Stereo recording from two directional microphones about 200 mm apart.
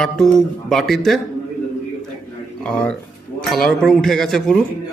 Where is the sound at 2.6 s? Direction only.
5° left (ahead or behind).